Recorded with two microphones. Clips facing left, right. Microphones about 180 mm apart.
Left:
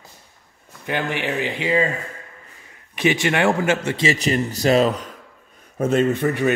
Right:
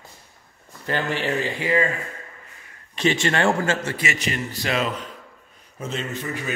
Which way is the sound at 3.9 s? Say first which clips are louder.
Left 7 dB; 30° left (ahead or behind).